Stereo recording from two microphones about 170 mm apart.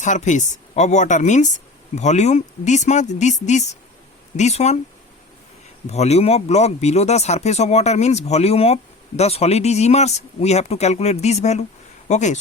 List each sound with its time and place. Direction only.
0.0 s speech: 45° left (ahead or behind)
5.9 s speech: 40° left (ahead or behind)